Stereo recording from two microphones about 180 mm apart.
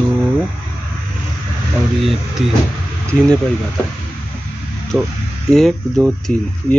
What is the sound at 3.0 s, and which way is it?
Speech, 5° left (ahead or behind).